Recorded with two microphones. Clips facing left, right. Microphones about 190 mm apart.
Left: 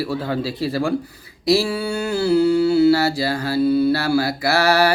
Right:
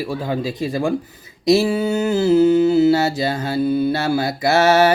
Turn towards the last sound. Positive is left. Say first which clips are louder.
# right 3 dB
turn(degrees=-20)  # may be behind; listen again after turning